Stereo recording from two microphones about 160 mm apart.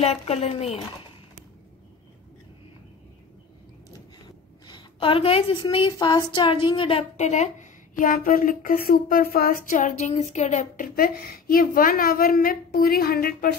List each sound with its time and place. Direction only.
0.0 s a woman's voice: 40° left (ahead or behind)
4.6 s a woman's voice: 30° left (ahead or behind)
7.9 s speech: 60° left (ahead or behind)
9.7 s speech: 55° left (ahead or behind); by 13.6 s 70° left (ahead or behind)